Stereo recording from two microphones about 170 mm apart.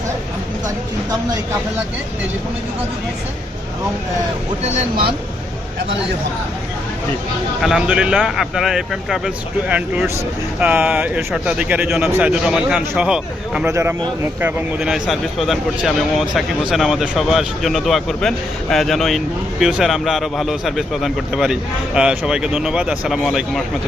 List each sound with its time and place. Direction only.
4.7 s speech: 55° right (ahead or behind)
7.6 s a man's voice: 5° right (ahead or behind)
13.7 s speech: 15° right (ahead or behind)
14.8 s a man's voice: 5° right (ahead or behind)